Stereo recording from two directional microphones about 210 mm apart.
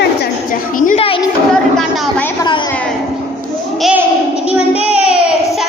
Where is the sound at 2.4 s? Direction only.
20° left (ahead or behind).